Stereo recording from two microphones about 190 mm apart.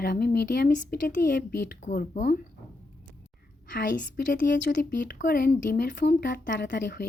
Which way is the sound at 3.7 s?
45° left (ahead or behind).